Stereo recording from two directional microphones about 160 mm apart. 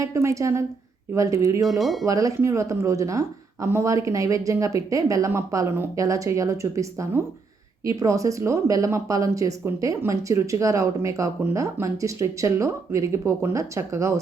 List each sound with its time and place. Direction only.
0.0 s speech: 20° right (ahead or behind)
1.8 s speech: centre (ahead or behind)
2.0 s speech: 20° right (ahead or behind)